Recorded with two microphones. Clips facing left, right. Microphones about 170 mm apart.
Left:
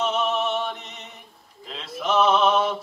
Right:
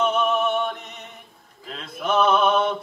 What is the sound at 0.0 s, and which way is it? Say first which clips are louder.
Music: right 3 dB; 55° right (ahead or behind).